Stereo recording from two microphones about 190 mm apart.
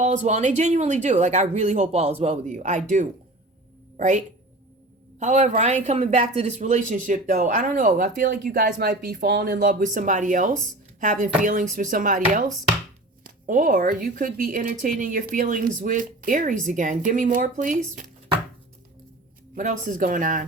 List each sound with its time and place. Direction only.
0.0 s speech: 40° right (ahead or behind)
3.9 s speech: 40° right (ahead or behind)
5.2 s speech: 40° right (ahead or behind)
13.5 s speech: 45° right (ahead or behind)
19.5 s speech: 45° right (ahead or behind)